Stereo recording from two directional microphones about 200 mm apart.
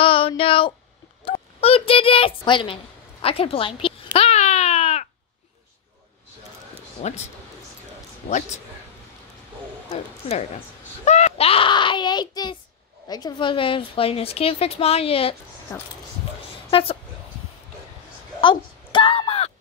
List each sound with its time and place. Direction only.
0.0 s a sound: 25° left (ahead or behind)
7.0 s a woman's voice: 25° left (ahead or behind)
9.8 s a child's voice: 30° left (ahead or behind)
15.7 s speech: 15° left (ahead or behind)
16.7 s speech: 25° left (ahead or behind)
18.4 s wail: 25° left (ahead or behind)